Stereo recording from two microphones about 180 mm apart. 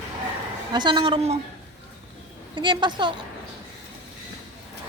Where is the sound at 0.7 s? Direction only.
25° right (ahead or behind).